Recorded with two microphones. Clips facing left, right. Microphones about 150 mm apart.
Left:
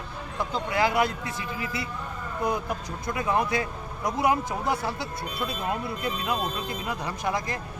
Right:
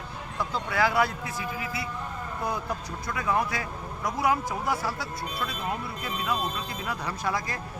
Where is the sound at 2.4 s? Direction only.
20° left (ahead or behind).